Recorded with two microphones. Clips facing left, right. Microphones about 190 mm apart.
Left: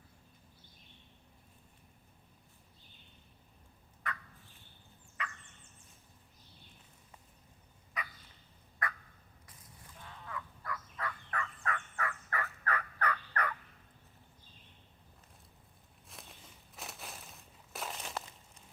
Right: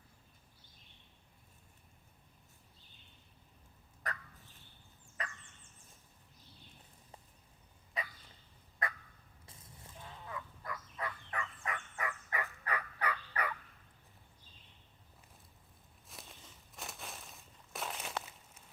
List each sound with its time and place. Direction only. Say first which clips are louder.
4.0 s fowl: left 1 dB; 40° right (ahead or behind)
5.2 s turkey: left 1 dB; 40° right (ahead or behind)
8.0 s fowl: right 1 dB; 30° right (ahead or behind); by 13.5 s 10° right (ahead or behind)
16.0 s a sound: even; centre (ahead or behind)